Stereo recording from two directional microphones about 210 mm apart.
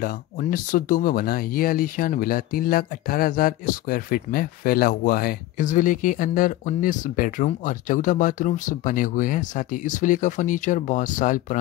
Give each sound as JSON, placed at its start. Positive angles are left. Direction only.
{"t": 0.0, "sound": "speech", "side_deg": 45}